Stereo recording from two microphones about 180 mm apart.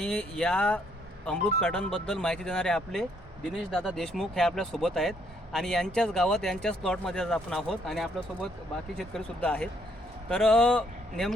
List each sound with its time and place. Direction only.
0.0 s speech: 5° left (ahead or behind)